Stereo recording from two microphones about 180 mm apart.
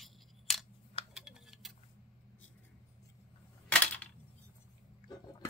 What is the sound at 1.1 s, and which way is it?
Typing, 5° right (ahead or behind).